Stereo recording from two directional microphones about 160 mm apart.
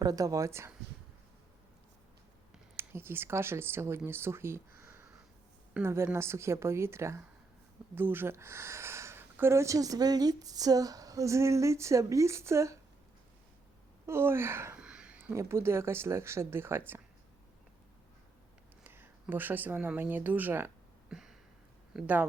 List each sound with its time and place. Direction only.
0.0 s speech: 20° right (ahead or behind)
2.7 s a woman's voice: 15° right (ahead or behind)
14.1 s a woman's voice: 15° right (ahead or behind)
18.8 s speech: 15° right (ahead or behind)
21.1 s a sound: 5° right (ahead or behind)
21.9 s a woman's voice: 10° right (ahead or behind)